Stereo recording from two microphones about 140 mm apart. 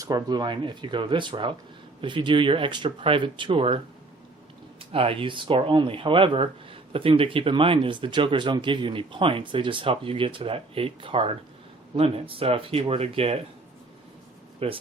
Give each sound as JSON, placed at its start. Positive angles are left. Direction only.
{"t": 0.0, "sound": "speech", "side_deg": -30}
{"t": 4.8, "sound": "speech", "side_deg": -40}
{"t": 14.6, "sound": "speech", "side_deg": -40}